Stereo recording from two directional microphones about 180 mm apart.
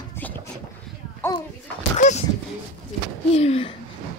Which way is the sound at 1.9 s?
40° left (ahead or behind).